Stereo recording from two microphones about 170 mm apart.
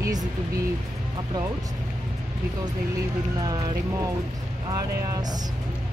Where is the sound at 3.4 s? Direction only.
20° right (ahead or behind).